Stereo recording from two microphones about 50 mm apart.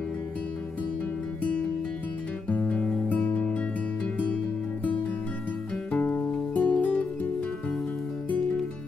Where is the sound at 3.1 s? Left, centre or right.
Left.